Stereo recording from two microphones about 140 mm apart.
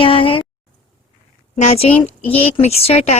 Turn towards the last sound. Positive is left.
turn(degrees=50)  # may be behind; listen again after turning